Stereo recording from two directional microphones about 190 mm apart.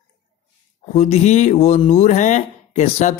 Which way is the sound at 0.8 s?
35° left (ahead or behind).